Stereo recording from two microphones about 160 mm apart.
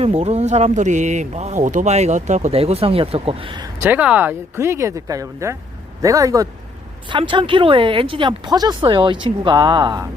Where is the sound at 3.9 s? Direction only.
10° right (ahead or behind).